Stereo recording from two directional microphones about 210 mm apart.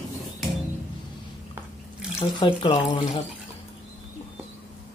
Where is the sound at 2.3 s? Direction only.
20° left (ahead or behind).